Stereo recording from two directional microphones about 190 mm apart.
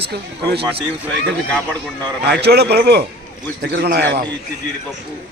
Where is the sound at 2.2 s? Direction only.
60° right (ahead or behind).